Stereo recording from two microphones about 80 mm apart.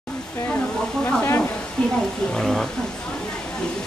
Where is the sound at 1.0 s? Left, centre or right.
Left.